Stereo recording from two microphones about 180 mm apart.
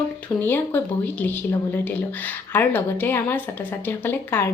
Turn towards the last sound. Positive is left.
turn(degrees=10)  # may be behind; listen again after turning